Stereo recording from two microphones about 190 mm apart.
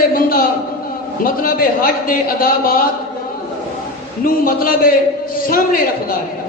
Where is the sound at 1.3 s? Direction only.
50° left (ahead or behind).